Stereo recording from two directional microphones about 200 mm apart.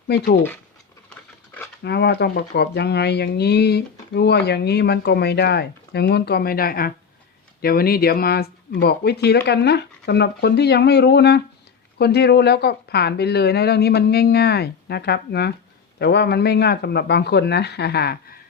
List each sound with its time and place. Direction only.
0.1 s speech: 55° left (ahead or behind)
1.8 s speech: 55° left (ahead or behind)